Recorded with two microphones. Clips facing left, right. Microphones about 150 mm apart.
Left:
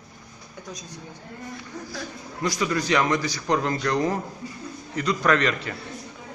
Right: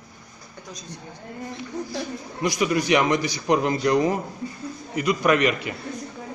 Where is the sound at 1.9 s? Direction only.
15° right (ahead or behind).